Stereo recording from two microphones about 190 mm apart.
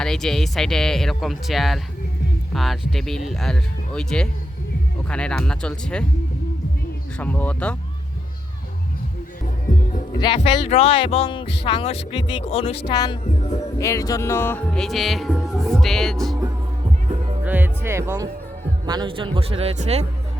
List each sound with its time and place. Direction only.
0.0 s speech: 5° left (ahead or behind)
7.2 s speech: 10° left (ahead or behind)
10.2 s speech: 30° left (ahead or behind); by 16.4 s centre (ahead or behind)
17.4 s music: 10° right (ahead or behind)
18.9 s speech: 25° right (ahead or behind)